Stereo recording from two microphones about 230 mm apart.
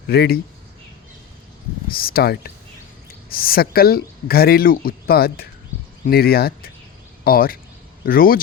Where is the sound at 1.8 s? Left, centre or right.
Left.